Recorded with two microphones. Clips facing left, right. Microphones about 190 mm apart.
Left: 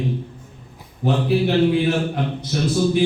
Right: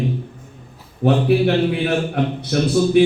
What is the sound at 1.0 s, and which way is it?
Speech, 60° right (ahead or behind).